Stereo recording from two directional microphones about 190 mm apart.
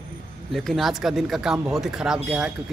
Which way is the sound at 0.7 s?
Centre (ahead or behind).